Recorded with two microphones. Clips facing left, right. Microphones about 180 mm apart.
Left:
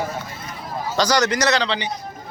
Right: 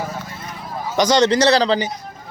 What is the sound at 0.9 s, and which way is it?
Speech, 25° right (ahead or behind).